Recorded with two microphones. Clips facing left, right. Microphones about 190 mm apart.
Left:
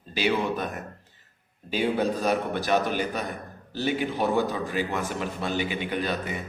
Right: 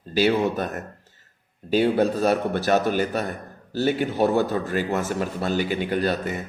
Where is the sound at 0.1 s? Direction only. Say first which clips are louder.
Right 5 dB; 45° right (ahead or behind).